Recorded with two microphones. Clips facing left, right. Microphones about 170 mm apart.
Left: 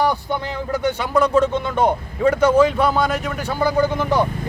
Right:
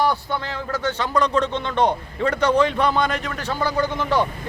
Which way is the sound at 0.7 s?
15° left (ahead or behind).